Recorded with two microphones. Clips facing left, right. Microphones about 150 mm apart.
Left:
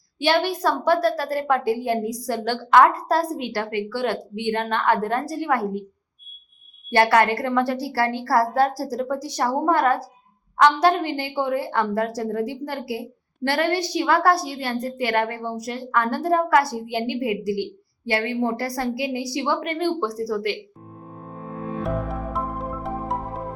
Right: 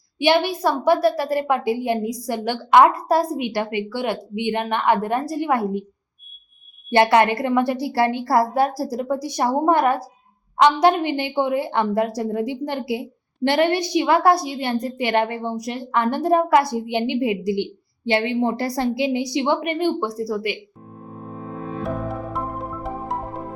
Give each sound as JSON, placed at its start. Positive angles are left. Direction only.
{"t": 0.2, "sound": "a woman's voice", "side_deg": -15}
{"t": 6.9, "sound": "a woman's voice", "side_deg": -20}
{"t": 21.8, "sound": "music", "side_deg": 0}